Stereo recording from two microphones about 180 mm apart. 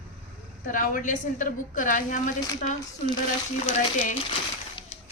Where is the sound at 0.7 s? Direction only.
50° left (ahead or behind).